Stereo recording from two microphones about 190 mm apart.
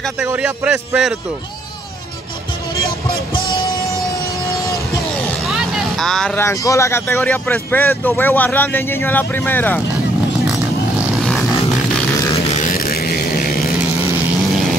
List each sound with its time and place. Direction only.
0.2 s a man's voice: 5° right (ahead or behind)
5.2 s speech: centre (ahead or behind)
12.4 s a sound: 40° left (ahead or behind)